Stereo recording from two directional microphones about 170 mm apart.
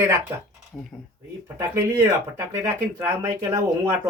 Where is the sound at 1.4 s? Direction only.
15° right (ahead or behind).